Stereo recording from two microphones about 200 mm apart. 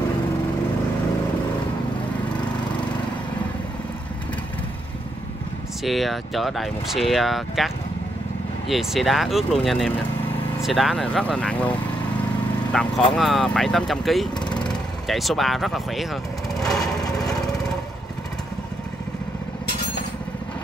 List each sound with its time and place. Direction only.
5.9 s speech: centre (ahead or behind)
12.7 s speech: centre (ahead or behind)
17.0 s lawn mower: 20° left (ahead or behind)